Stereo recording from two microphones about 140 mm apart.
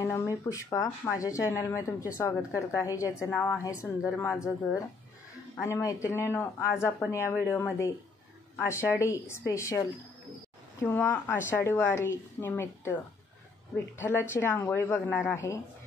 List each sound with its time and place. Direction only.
0.0 s a woman's voice: 20° left (ahead or behind)